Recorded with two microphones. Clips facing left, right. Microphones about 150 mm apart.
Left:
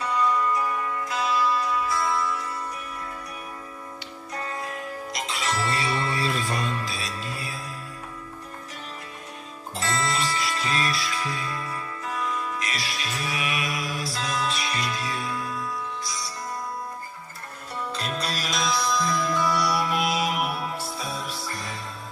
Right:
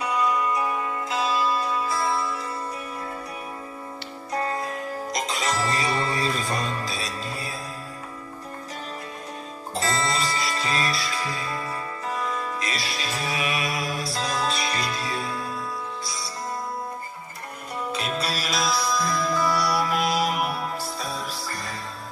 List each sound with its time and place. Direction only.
0.0 s music: 15° right (ahead or behind)
4.3 s music: 35° right (ahead or behind)
9.7 s music: 35° right (ahead or behind)
17.7 s music: 10° right (ahead or behind)